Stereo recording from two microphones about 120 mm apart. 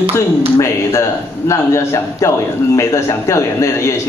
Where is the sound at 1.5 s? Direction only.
25° left (ahead or behind).